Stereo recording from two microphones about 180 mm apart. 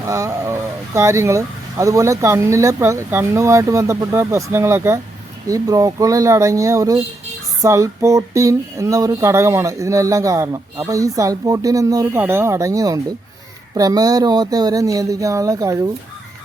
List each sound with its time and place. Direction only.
0.0 s speech: 15° right (ahead or behind)